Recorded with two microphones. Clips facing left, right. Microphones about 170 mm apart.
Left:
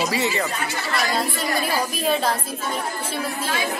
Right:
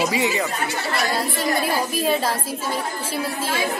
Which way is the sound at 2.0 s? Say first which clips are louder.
Even; centre (ahead or behind).